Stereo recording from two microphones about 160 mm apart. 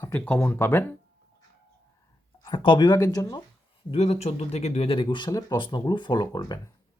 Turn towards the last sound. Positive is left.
turn(degrees=25)  # may be behind; listen again after turning